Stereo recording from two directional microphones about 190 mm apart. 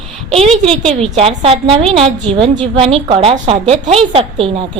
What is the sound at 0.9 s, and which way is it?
A woman's voice, 30° right (ahead or behind).